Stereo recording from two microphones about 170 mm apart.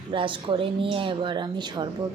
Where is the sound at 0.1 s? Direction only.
30° right (ahead or behind).